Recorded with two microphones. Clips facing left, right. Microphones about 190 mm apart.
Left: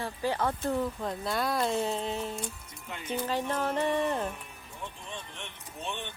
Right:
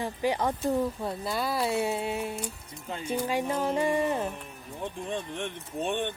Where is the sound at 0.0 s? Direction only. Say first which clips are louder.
Right 2 dB; 15° right (ahead or behind).